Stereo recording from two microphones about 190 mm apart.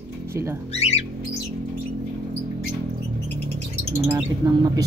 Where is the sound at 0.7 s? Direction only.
35° left (ahead or behind).